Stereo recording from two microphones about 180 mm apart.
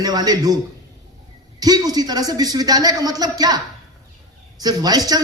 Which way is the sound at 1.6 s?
20° right (ahead or behind).